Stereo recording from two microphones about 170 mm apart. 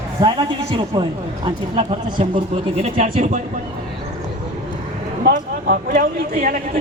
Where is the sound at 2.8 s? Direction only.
40° right (ahead or behind).